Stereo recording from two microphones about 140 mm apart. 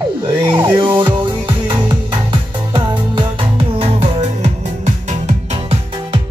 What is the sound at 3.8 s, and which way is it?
Music, 50° right (ahead or behind).